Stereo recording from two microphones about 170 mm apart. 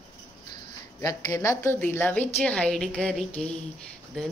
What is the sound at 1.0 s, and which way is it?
A woman's voice, 20° left (ahead or behind).